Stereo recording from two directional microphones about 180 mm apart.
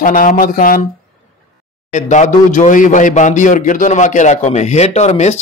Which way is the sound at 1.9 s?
40° left (ahead or behind).